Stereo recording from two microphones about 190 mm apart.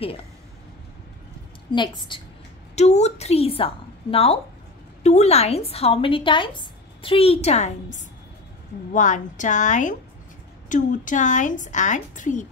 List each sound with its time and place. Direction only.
1.7 s a woman's voice: 25° left (ahead or behind); by 12.4 s 40° left (ahead or behind)